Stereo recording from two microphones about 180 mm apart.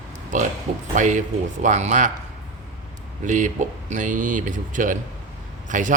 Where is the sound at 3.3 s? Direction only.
45° right (ahead or behind).